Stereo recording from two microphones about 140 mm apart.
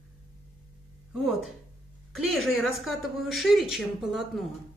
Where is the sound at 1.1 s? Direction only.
5° right (ahead or behind).